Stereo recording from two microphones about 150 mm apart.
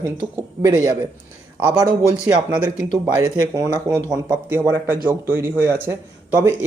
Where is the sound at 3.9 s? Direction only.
15° right (ahead or behind).